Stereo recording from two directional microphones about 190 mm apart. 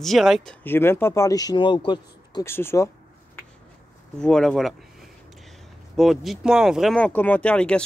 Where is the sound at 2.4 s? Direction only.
15° left (ahead or behind).